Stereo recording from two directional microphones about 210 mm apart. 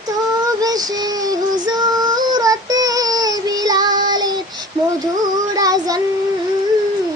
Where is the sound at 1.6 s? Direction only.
20° right (ahead or behind).